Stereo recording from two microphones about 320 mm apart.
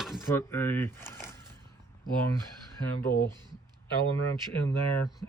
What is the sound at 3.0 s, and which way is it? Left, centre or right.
Speech, left.